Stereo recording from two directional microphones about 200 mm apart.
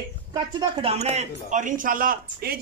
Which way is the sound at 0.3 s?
25° right (ahead or behind).